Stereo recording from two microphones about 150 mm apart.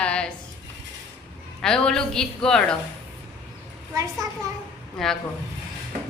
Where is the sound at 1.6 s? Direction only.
5° left (ahead or behind).